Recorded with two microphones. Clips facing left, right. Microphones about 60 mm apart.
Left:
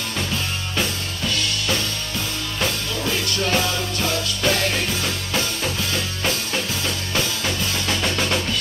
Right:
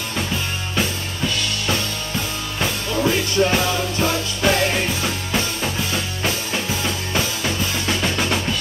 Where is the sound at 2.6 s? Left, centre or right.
Right.